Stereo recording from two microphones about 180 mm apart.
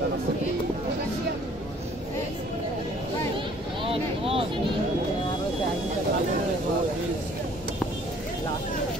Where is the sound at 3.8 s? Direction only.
30° right (ahead or behind).